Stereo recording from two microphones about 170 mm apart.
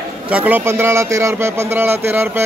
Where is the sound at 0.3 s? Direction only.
10° right (ahead or behind).